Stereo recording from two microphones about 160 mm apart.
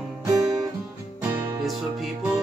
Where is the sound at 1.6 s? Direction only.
Centre (ahead or behind).